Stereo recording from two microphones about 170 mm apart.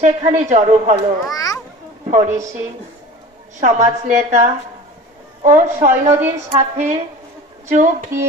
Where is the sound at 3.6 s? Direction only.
40° right (ahead or behind).